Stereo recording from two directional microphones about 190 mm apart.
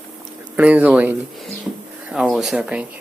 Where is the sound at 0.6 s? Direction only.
5° right (ahead or behind).